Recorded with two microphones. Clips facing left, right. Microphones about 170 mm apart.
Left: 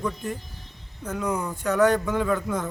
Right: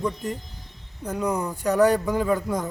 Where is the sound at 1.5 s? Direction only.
35° right (ahead or behind).